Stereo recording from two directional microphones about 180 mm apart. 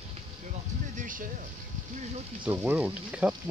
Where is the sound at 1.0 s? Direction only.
50° right (ahead or behind).